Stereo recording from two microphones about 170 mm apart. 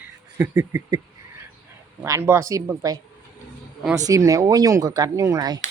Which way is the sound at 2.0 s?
15° right (ahead or behind).